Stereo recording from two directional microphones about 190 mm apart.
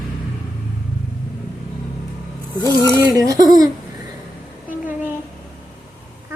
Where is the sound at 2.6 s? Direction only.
20° left (ahead or behind).